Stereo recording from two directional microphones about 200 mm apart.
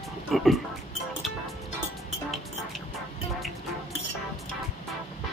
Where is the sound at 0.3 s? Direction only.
Centre (ahead or behind).